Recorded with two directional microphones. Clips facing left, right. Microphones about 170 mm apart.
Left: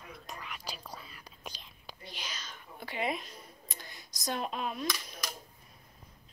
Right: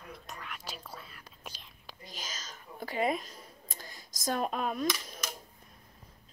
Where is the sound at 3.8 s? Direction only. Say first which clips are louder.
Right 4 dB; 45° right (ahead or behind).